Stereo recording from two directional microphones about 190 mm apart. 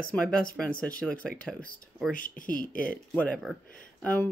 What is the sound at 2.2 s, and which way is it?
Speech, 45° left (ahead or behind).